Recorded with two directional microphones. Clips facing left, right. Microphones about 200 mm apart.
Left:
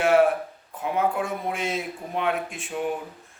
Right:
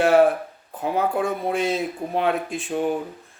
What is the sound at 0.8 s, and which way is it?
Speech, 35° right (ahead or behind).